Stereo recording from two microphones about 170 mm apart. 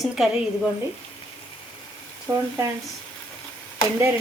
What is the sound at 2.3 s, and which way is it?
Speech, 20° right (ahead or behind).